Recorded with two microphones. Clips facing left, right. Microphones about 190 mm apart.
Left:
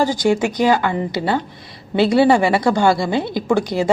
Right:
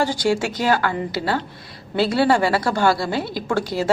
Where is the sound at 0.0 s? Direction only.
15° left (ahead or behind).